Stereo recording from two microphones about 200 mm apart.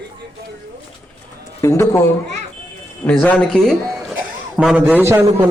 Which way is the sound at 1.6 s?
15° left (ahead or behind).